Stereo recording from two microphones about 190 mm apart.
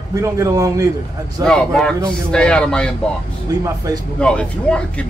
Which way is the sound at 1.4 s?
5° left (ahead or behind).